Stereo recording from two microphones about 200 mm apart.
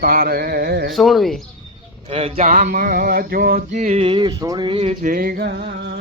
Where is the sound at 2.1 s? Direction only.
30° right (ahead or behind).